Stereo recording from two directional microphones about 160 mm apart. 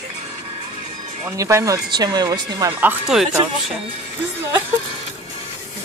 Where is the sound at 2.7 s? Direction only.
10° right (ahead or behind).